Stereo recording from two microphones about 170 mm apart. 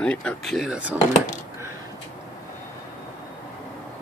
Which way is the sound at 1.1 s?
45° left (ahead or behind).